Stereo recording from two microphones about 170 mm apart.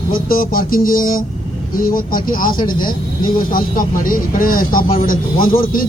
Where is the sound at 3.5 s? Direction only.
55° left (ahead or behind).